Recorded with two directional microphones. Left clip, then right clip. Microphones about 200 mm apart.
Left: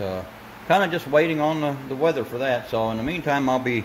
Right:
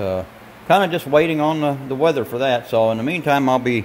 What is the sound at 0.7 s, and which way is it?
A man's voice, 30° right (ahead or behind).